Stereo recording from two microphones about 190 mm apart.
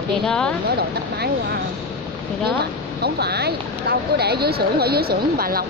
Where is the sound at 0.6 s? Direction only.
55° right (ahead or behind).